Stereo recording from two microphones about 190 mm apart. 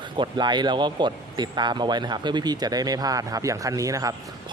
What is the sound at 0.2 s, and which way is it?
Speech, 25° right (ahead or behind).